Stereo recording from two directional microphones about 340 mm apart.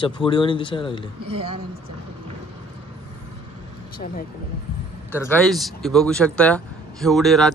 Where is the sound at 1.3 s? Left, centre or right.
Centre.